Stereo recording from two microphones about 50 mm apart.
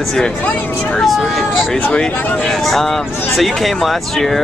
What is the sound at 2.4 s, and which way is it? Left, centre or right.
Speech, centre.